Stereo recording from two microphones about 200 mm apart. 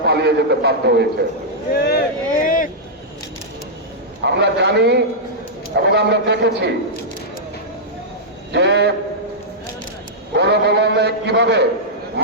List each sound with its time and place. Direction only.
0.0 s a man's voice: 55° right (ahead or behind)
1.7 s a sound: 50° left (ahead or behind)
4.2 s a man's voice: 60° right (ahead or behind)
8.5 s a man's voice: 60° right (ahead or behind)
10.3 s a man's voice: 55° right (ahead or behind)